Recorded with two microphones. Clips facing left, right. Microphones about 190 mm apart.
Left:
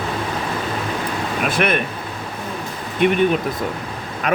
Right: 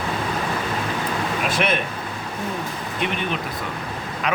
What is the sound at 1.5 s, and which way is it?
Speech, 55° left (ahead or behind).